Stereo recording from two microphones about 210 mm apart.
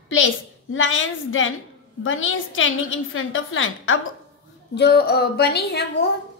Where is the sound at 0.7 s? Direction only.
65° left (ahead or behind).